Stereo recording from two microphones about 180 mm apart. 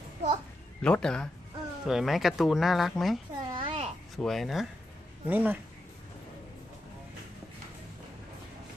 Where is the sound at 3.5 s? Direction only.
25° right (ahead or behind).